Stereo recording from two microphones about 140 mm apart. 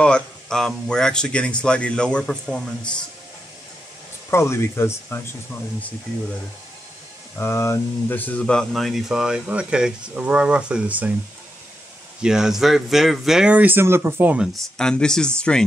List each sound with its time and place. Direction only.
0.0 s speech: 5° left (ahead or behind)
4.3 s speech: 20° left (ahead or behind)
7.3 s speech: 20° left (ahead or behind); by 11.1 s 10° right (ahead or behind)
12.2 s speech: 5° right (ahead or behind)